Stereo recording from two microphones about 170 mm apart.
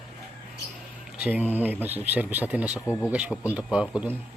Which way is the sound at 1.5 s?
10° right (ahead or behind).